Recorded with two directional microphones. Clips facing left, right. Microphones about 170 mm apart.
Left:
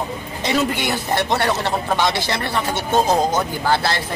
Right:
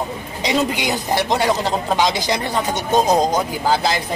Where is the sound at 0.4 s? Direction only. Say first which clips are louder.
Right 1 dB; 15° right (ahead or behind).